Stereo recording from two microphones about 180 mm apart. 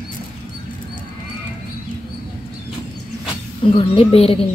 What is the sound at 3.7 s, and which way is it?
Speech, 30° left (ahead or behind).